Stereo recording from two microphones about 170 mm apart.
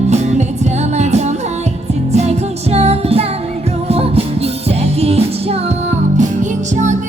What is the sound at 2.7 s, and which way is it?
Music, 35° right (ahead or behind).